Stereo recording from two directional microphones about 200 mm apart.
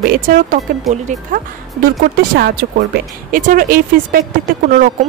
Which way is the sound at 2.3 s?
50° right (ahead or behind).